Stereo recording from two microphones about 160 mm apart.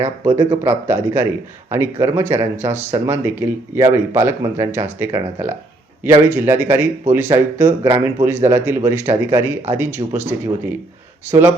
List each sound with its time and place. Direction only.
0.3 s speech: 15° right (ahead or behind)